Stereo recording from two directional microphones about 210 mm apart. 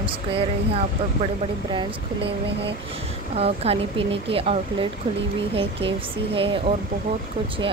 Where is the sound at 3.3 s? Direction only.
30° right (ahead or behind).